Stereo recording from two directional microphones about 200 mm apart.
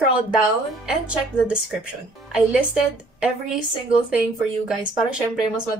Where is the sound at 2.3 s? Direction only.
5° right (ahead or behind).